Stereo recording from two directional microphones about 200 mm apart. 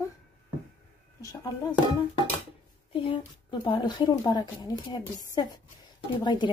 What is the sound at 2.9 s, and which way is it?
Speech, 25° left (ahead or behind).